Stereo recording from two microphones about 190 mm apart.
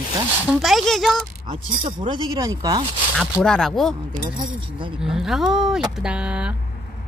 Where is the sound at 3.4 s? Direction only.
5° left (ahead or behind).